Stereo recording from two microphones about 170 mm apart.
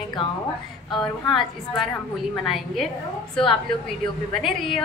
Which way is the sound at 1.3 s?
Centre (ahead or behind).